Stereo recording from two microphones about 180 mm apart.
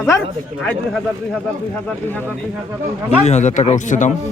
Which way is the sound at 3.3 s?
40° left (ahead or behind).